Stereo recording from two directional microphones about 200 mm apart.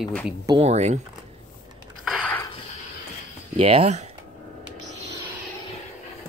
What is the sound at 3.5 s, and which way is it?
Speech, 30° right (ahead or behind).